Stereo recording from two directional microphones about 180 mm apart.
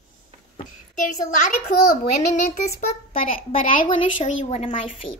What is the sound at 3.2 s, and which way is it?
A child's voice, 50° left (ahead or behind).